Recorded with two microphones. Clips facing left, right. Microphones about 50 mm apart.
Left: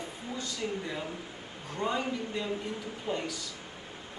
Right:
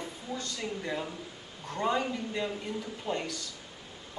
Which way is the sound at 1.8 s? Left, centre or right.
Centre.